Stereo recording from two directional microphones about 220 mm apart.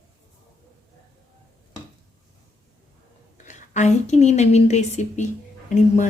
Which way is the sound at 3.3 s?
35° left (ahead or behind).